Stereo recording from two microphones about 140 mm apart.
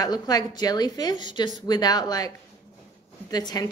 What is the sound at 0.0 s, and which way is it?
A woman's voice, 30° left (ahead or behind).